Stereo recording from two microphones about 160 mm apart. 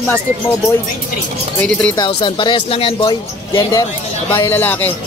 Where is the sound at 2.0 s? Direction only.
30° left (ahead or behind).